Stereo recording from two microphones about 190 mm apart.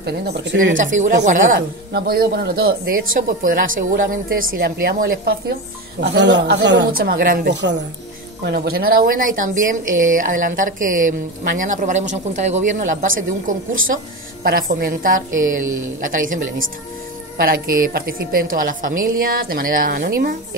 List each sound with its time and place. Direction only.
0.0 s speech: 60° right (ahead or behind)
0.7 s speech: 40° right (ahead or behind)
1.9 s speech: 55° right (ahead or behind)